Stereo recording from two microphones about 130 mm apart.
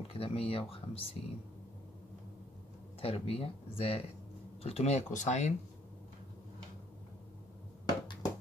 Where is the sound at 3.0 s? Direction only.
50° left (ahead or behind); by 5.6 s 65° left (ahead or behind).